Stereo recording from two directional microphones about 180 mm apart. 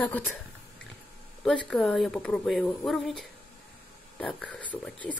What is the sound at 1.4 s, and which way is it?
A woman's voice, 5° left (ahead or behind).